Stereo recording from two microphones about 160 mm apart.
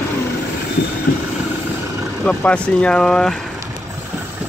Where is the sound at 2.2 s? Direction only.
5° left (ahead or behind).